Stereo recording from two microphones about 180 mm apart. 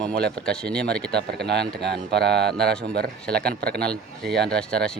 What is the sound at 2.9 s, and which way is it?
Speech, 60° right (ahead or behind).